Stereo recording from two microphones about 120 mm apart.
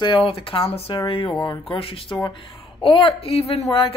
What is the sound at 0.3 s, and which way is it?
Speech, 50° left (ahead or behind).